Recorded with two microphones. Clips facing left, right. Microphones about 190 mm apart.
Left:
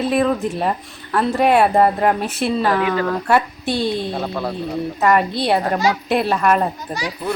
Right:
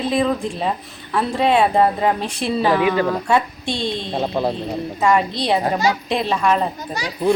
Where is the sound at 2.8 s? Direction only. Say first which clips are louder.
Right 2 dB; 15° right (ahead or behind).